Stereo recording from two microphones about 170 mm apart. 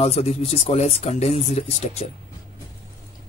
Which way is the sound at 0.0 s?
35° left (ahead or behind).